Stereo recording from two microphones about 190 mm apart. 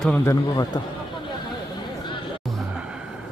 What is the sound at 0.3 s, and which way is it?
Speech, 20° left (ahead or behind).